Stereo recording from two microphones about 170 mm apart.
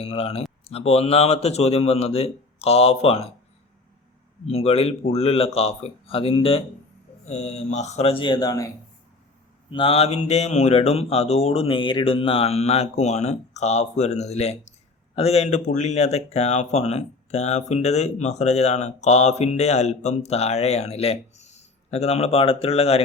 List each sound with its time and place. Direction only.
0.0 s speech: 35° left (ahead or behind)
4.4 s speech: 35° left (ahead or behind)
9.7 s speech: 35° left (ahead or behind)